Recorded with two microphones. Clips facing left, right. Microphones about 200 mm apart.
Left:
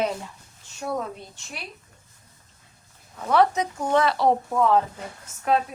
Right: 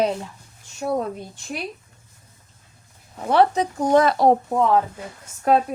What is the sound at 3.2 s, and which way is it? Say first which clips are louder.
Speech: right 3 dB; 30° right (ahead or behind).